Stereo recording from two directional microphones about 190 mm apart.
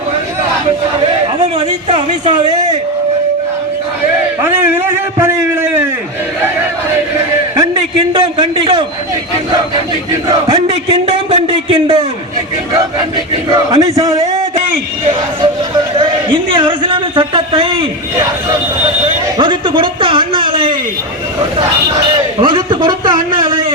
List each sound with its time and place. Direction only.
1.5 s a woman's voice: 35° right (ahead or behind)
4.4 s a sound: 10° right (ahead or behind)
7.5 s a sound: 20° right (ahead or behind)
10.2 s a man's voice: 20° right (ahead or behind)
13.9 s a man's voice: 15° right (ahead or behind)
15.4 s a man's voice: 25° right (ahead or behind)
19.4 s a man's voice: 25° right (ahead or behind)
22.4 s a man's voice: 25° right (ahead or behind)